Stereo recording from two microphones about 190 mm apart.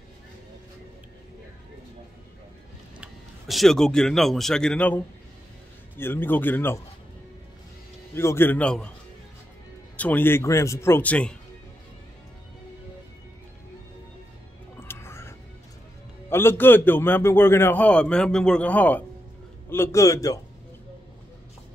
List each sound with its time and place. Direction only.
3.0 s a man's voice: centre (ahead or behind)
8.1 s a man's voice: 15° left (ahead or behind)
9.9 s a man's voice: 10° left (ahead or behind)
14.8 s music: 15° left (ahead or behind)
16.3 s a man's voice: 10° left (ahead or behind)